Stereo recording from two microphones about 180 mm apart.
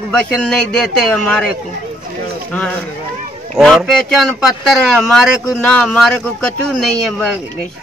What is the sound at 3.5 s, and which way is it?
Speech, centre (ahead or behind).